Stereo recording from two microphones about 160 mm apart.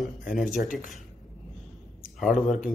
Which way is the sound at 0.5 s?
55° left (ahead or behind).